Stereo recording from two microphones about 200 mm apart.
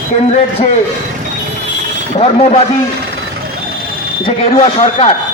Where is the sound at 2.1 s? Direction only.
30° left (ahead or behind).